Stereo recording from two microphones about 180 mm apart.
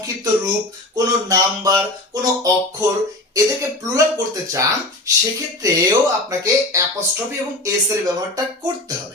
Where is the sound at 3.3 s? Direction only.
20° right (ahead or behind).